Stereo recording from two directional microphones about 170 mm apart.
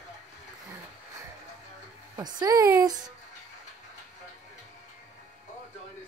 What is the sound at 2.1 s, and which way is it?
Speech, 25° right (ahead or behind).